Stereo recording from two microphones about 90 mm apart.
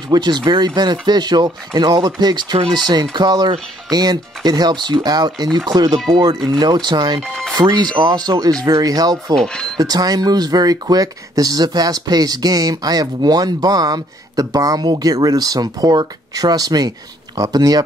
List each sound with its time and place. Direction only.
0.1 s speech: 55° right (ahead or behind)
7.2 s music: 10° left (ahead or behind)
7.6 s speech: 60° right (ahead or behind)
9.3 s speech: 5° left (ahead or behind)
9.8 s speech: 45° right (ahead or behind)